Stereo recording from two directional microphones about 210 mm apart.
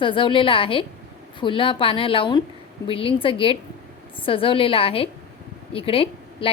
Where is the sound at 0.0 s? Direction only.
25° left (ahead or behind).